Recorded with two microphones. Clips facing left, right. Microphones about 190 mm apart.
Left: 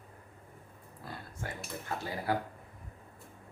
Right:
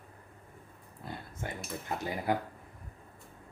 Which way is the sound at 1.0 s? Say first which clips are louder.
Right 2 dB; 20° right (ahead or behind).